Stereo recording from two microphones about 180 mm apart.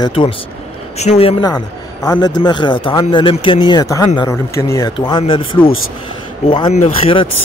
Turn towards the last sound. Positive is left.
turn(degrees=35)  # may be behind; listen again after turning